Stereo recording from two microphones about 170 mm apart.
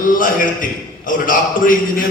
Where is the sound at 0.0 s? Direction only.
50° left (ahead or behind).